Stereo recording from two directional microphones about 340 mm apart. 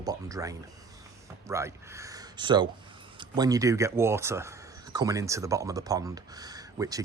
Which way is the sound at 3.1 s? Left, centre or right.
Centre.